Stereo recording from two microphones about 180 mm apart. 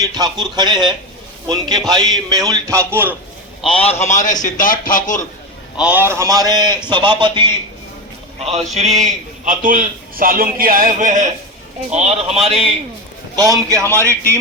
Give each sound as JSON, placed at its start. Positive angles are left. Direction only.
{"t": 0.0, "sound": "a man's voice", "side_deg": -20}
{"t": 3.8, "sound": "speech", "side_deg": 35}
{"t": 5.8, "sound": "a man's voice", "side_deg": -10}
{"t": 8.4, "sound": "a man's voice", "side_deg": -35}
{"t": 13.3, "sound": "a man's voice", "side_deg": -20}